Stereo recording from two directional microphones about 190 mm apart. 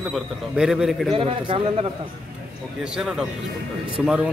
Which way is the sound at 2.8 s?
5° right (ahead or behind).